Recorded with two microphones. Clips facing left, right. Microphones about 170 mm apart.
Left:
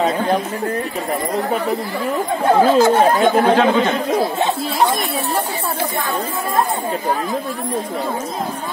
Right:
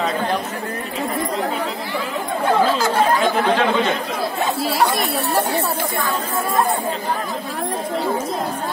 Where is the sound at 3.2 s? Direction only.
45° left (ahead or behind).